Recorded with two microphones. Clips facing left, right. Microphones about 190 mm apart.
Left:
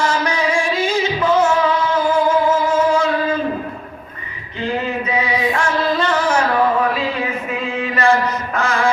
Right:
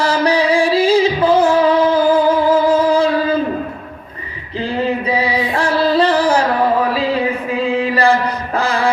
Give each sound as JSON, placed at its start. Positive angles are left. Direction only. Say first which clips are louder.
{"t": 0.0, "sound": "music", "louder": "right 4 dB", "side_deg": -35}
{"t": 4.6, "sound": "music", "louder": "right 3 dB", "side_deg": -35}
{"t": 6.9, "sound": "chant", "louder": "right 5 dB", "side_deg": -35}